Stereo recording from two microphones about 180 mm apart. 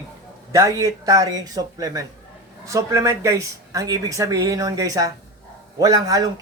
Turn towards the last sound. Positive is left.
turn(degrees=-20)  # may be behind; listen again after turning